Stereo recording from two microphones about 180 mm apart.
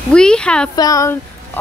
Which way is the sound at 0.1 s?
5° left (ahead or behind).